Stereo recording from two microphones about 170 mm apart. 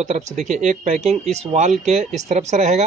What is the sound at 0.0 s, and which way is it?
Speech, 40° right (ahead or behind).